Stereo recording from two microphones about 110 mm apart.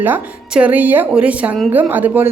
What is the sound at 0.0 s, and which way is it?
A woman's voice, 15° right (ahead or behind).